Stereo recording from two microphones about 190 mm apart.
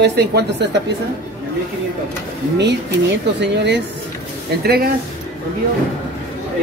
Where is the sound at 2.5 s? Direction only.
65° right (ahead or behind).